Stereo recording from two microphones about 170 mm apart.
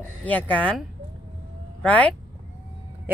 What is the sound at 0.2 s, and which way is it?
Speech, 10° left (ahead or behind).